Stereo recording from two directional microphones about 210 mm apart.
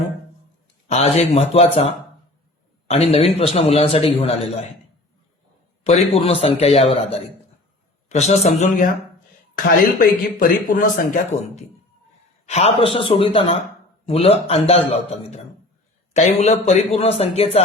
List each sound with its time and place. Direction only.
0.9 s a man's voice: 30° left (ahead or behind)
5.8 s a man's voice: 30° left (ahead or behind)